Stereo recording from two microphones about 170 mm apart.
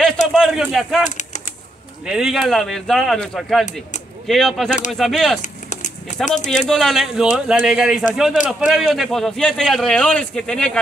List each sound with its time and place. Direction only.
0.3 s speech: centre (ahead or behind)
1.0 s typing: 45° left (ahead or behind)
2.0 s speech: 5° right (ahead or behind)
5.4 s a sound: 45° left (ahead or behind)
6.5 s speech: centre (ahead or behind)